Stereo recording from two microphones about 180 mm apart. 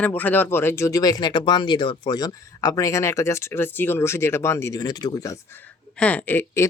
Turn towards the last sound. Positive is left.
turn(degrees=15)  # may be behind; listen again after turning